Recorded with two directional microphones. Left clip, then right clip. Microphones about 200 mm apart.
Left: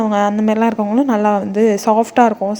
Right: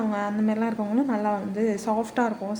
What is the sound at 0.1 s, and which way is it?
A woman's voice, 40° left (ahead or behind).